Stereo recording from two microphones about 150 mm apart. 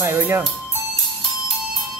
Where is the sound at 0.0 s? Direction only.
15° right (ahead or behind).